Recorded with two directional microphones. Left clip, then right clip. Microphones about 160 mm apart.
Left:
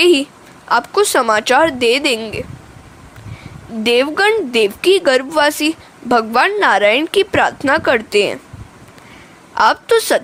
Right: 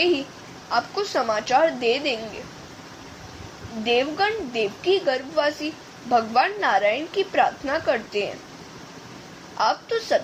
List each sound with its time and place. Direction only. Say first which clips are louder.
0.7 s a woman's voice: left 10 dB; 55° left (ahead or behind)
3.8 s a woman's voice: left 9 dB; 55° left (ahead or behind)
9.6 s a woman's voice: left 11 dB; 65° left (ahead or behind)